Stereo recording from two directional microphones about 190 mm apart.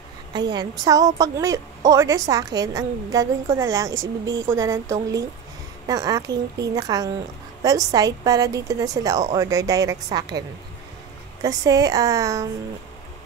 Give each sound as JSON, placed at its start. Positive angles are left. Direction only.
{"t": 0.3, "sound": "a woman's voice", "side_deg": -20}
{"t": 11.4, "sound": "a woman's voice", "side_deg": -20}